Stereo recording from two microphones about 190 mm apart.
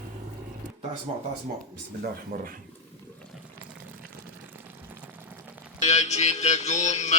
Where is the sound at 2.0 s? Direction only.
50° right (ahead or behind).